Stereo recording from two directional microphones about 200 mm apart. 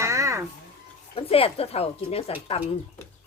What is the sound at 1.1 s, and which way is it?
A woman's voice, 30° left (ahead or behind).